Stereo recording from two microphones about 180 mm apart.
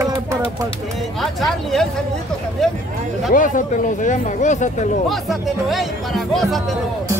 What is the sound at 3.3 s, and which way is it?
Speech, 45° left (ahead or behind).